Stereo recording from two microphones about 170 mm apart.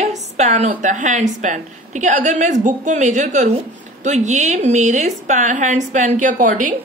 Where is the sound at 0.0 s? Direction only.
40° right (ahead or behind).